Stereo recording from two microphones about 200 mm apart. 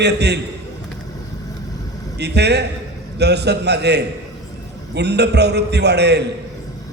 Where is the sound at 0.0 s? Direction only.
55° right (ahead or behind).